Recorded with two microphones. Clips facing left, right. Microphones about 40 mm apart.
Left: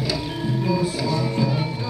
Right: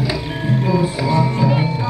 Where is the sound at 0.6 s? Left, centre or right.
Right.